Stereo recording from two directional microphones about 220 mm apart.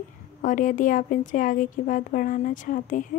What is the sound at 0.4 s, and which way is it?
A woman's voice, 35° left (ahead or behind).